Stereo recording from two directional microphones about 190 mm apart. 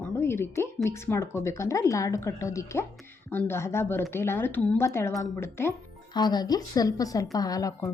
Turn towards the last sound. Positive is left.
turn(degrees=20)  # may be behind; listen again after turning